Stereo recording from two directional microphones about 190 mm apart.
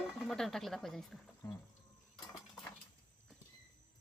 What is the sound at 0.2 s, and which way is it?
Speech, centre (ahead or behind).